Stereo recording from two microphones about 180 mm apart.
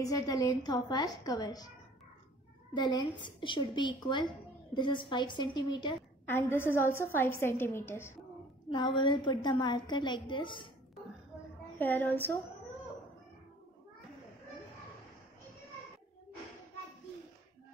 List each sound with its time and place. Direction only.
0.0 s a woman's voice: 20° left (ahead or behind)
2.7 s a woman's voice: 25° left (ahead or behind)
6.2 s a woman's voice: 10° left (ahead or behind)
8.6 s a woman's voice: 25° left (ahead or behind)
11.8 s a woman's voice: 10° left (ahead or behind)